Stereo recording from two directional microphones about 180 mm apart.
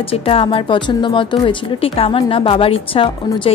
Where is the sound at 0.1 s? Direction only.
30° left (ahead or behind).